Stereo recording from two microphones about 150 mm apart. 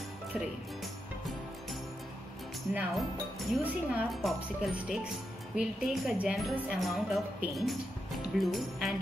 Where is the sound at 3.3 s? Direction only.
Centre (ahead or behind).